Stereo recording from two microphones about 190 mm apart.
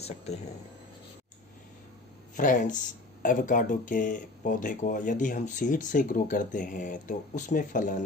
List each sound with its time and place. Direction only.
0.0 s speech: 35° left (ahead or behind)
2.3 s speech: 40° left (ahead or behind)